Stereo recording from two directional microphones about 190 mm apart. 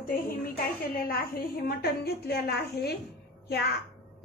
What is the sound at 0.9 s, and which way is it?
A woman's voice, 50° left (ahead or behind).